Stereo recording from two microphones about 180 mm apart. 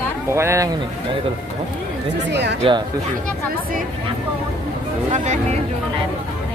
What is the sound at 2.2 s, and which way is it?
Speech, 70° right (ahead or behind).